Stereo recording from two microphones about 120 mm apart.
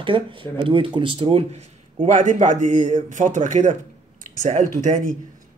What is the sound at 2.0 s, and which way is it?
Speech, 90° right.